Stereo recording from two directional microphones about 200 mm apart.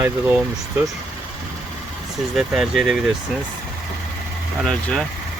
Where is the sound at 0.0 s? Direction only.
5° right (ahead or behind).